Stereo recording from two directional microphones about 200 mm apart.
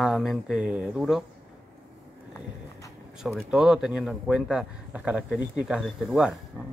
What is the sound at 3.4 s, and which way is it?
Speech, centre (ahead or behind).